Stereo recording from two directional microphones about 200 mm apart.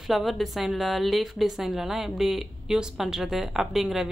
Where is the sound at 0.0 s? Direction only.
Centre (ahead or behind).